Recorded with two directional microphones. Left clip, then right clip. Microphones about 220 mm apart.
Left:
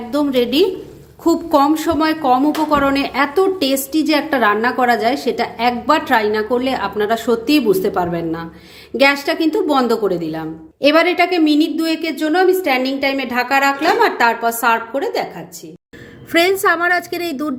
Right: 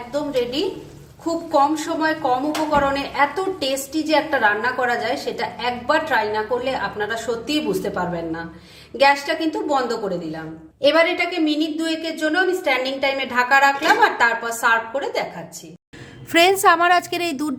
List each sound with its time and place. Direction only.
0.1 s a woman's voice: 40° left (ahead or behind)
16.3 s a woman's voice: 10° right (ahead or behind)